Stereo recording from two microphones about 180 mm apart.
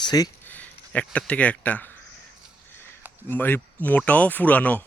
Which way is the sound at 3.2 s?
10° left (ahead or behind).